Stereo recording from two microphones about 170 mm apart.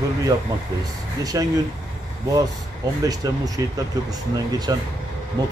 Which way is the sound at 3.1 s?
20° right (ahead or behind).